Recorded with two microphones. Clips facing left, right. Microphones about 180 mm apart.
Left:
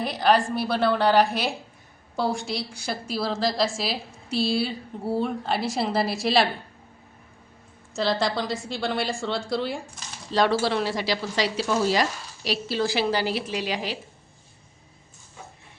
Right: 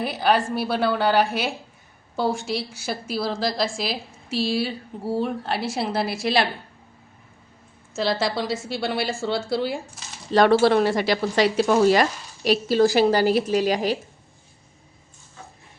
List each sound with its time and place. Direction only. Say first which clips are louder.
0.0 s a woman's voice: even; 5° right (ahead or behind)
7.9 s a woman's voice: right 1 dB; centre (ahead or behind)
10.3 s a woman's voice: right 6 dB; 55° right (ahead or behind)